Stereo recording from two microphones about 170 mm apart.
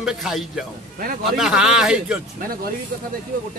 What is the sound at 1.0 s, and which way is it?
Speech, 55° right (ahead or behind).